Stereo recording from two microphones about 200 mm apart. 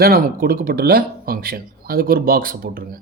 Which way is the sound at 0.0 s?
50° right (ahead or behind).